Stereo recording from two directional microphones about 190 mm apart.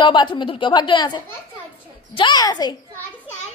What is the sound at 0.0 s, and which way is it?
A woman's voice, 25° left (ahead or behind).